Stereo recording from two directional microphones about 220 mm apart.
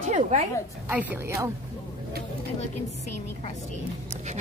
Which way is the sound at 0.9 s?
10° right (ahead or behind).